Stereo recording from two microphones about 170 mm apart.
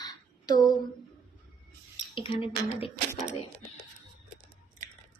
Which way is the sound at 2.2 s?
30° left (ahead or behind).